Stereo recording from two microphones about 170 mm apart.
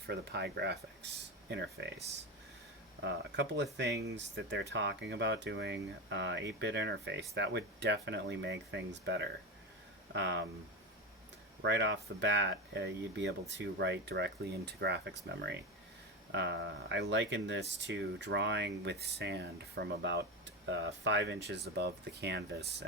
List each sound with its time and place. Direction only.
0.1 s speech: 75° right (ahead or behind)
3.0 s speech: 90° right
11.6 s speech: 90° right